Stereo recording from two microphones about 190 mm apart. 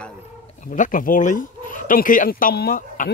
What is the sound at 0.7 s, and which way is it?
Speech, 45° left (ahead or behind).